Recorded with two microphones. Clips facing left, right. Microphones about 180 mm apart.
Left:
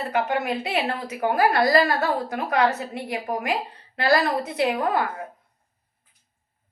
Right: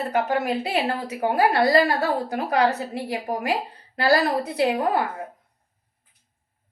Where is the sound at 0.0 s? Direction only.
40° right (ahead or behind).